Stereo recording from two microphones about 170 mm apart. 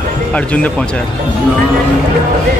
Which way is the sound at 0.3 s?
5° left (ahead or behind).